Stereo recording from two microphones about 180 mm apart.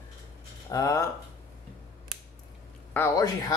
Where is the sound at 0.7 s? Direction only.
20° left (ahead or behind).